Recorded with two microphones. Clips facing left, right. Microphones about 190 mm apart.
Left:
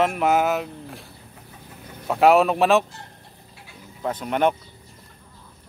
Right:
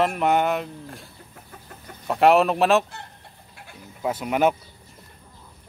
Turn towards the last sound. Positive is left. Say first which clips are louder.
# even
turn(degrees=-5)  # may be behind; listen again after turning